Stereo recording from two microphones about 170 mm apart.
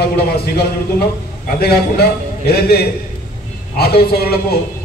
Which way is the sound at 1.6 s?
65° left (ahead or behind).